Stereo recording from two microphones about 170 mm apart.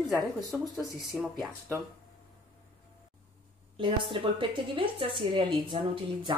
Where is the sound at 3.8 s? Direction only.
30° right (ahead or behind).